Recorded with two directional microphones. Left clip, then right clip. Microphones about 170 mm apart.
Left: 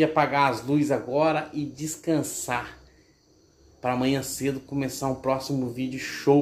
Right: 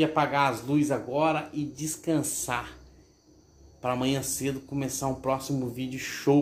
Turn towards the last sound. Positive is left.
turn(degrees=0)  # may be behind; listen again after turning